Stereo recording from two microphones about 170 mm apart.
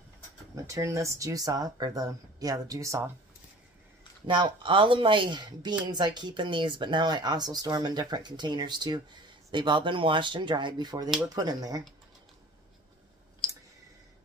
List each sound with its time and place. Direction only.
0.7 s speech: 20° right (ahead or behind)
4.3 s speech: 30° right (ahead or behind)